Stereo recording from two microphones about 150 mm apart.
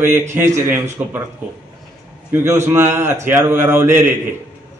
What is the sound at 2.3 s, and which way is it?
A man's voice, 15° right (ahead or behind).